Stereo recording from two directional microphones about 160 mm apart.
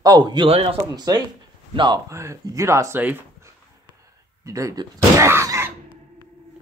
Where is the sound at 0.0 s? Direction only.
25° right (ahead or behind).